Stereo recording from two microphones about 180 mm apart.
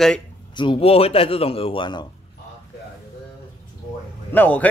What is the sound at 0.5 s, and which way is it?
Speech, 30° left (ahead or behind).